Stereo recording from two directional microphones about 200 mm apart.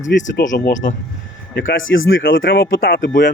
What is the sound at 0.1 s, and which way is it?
Speech, 65° left (ahead or behind).